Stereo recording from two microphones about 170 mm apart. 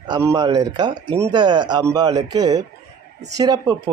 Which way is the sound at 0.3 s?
25° right (ahead or behind).